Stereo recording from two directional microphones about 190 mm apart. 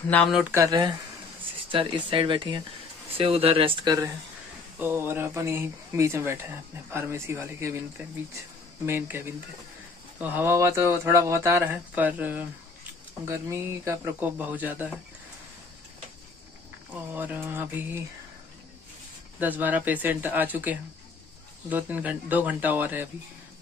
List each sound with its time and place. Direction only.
0.1 s speech: 5° left (ahead or behind)
0.4 s speech: 10° right (ahead or behind)
1.7 s speech: 25° right (ahead or behind)
4.7 s speech: 10° right (ahead or behind)
8.8 s speech: 10° right (ahead or behind)
10.2 s speech: 10° right (ahead or behind)
16.9 s speech: 10° right (ahead or behind)
19.4 s speech: 10° right (ahead or behind)